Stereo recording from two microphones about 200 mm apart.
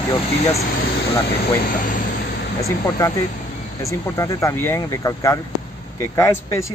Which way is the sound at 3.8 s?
15° left (ahead or behind).